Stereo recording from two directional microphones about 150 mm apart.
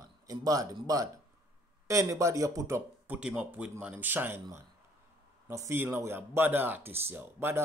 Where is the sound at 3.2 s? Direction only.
5° right (ahead or behind).